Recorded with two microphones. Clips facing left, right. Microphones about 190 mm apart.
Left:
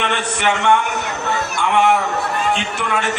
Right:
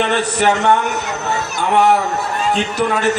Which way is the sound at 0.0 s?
40° right (ahead or behind).